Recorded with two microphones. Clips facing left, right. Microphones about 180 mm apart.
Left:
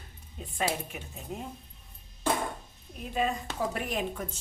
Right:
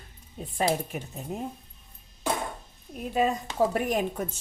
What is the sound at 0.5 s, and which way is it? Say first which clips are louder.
Speech: right 5 dB; 40° right (ahead or behind).